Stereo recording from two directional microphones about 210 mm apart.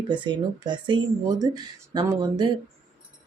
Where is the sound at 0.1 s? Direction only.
20° right (ahead or behind).